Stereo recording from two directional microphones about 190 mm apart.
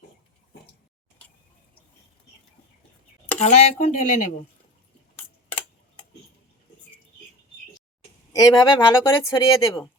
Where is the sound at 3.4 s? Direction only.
35° left (ahead or behind).